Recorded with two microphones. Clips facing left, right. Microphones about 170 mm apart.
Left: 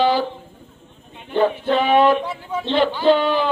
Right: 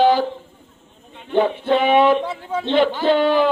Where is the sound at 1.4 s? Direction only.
15° right (ahead or behind).